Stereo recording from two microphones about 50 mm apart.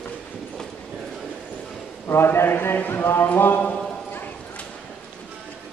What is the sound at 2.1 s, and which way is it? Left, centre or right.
A man's voice, left.